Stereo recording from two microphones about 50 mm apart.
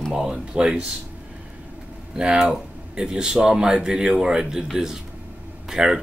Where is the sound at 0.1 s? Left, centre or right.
Centre.